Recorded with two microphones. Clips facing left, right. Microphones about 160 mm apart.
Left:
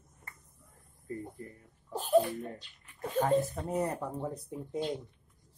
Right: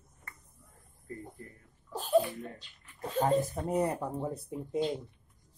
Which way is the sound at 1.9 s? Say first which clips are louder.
Left 1 dB; 10° left (ahead or behind).